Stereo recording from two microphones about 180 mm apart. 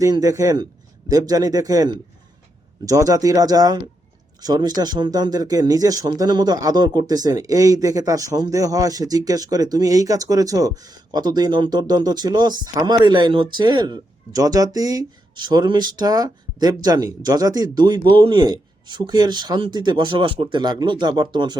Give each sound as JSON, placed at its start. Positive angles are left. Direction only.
{"t": 0.0, "sound": "speech", "side_deg": -20}